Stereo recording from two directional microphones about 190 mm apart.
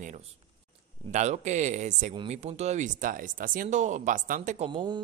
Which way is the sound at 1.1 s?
35° right (ahead or behind).